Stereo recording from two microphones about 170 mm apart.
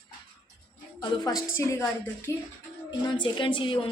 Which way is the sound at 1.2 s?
20° left (ahead or behind).